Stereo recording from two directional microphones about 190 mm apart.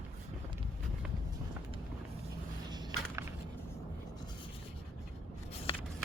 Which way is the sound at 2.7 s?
20° right (ahead or behind).